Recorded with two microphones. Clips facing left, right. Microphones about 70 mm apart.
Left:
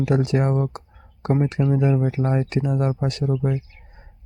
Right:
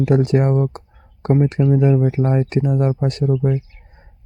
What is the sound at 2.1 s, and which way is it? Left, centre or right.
Speech, right.